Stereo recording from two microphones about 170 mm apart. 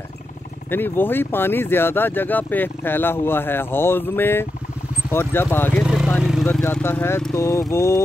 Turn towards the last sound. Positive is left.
turn(degrees=15)  # may be behind; listen again after turning